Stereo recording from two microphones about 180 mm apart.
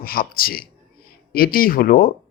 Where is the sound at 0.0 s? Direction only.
55° left (ahead or behind).